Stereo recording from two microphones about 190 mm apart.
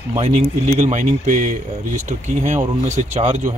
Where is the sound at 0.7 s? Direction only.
40° right (ahead or behind).